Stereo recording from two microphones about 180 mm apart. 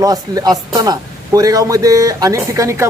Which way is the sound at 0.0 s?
20° right (ahead or behind).